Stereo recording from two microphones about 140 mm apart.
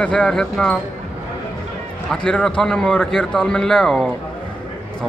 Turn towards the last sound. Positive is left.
turn(degrees=0)  # may be behind; listen again after turning